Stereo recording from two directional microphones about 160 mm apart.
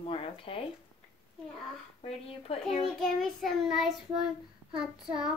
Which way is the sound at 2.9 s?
Centre (ahead or behind).